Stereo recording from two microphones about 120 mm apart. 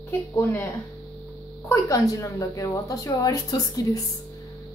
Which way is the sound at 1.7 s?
25° left (ahead or behind).